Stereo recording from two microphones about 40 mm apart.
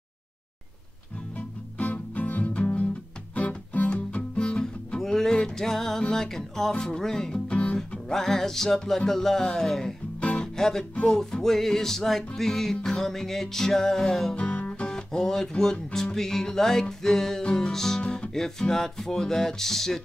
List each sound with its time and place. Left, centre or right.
1.8 s music: left
3.9 s music: left
5.0 s music: centre
7.5 s guitar: left
8.1 s music: centre
14.3 s music: left
14.9 s music: centre
18.0 s guitar: left
18.3 s music: centre